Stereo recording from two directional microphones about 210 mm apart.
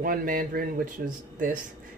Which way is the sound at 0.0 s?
40° right (ahead or behind).